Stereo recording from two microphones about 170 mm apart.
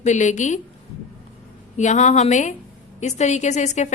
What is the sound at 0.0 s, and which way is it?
Speech, 45° left (ahead or behind).